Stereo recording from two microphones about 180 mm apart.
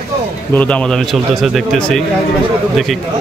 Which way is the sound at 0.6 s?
5° left (ahead or behind).